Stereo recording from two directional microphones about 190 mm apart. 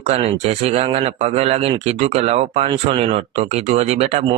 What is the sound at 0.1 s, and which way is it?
Speech, 35° right (ahead or behind).